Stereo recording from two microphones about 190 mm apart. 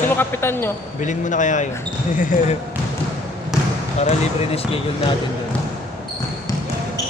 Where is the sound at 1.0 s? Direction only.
40° left (ahead or behind).